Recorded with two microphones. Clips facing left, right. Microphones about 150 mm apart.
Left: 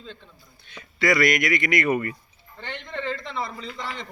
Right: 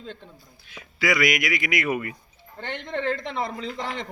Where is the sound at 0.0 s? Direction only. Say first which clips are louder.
Right 3 dB; 55° right (ahead or behind).